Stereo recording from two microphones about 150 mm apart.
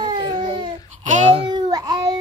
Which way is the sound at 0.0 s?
30° right (ahead or behind).